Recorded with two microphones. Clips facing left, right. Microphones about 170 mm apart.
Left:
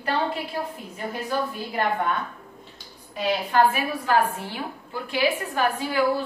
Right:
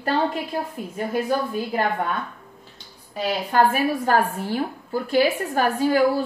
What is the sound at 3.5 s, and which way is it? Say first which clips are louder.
A woman's voice: right 3 dB; 45° right (ahead or behind).